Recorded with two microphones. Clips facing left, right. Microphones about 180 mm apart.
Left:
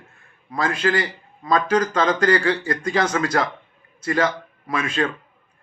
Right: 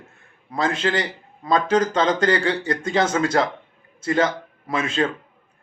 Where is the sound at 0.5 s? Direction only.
25° right (ahead or behind).